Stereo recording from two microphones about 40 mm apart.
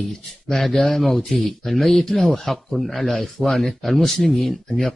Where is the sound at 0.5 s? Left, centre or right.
Centre.